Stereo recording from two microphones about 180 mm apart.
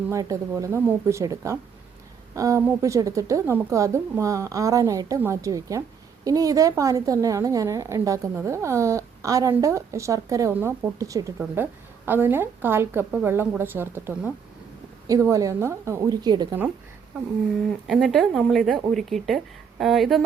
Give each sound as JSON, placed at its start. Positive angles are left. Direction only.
{"t": 0.1, "sound": "a woman's voice", "side_deg": -20}
{"t": 17.8, "sound": "speech", "side_deg": 0}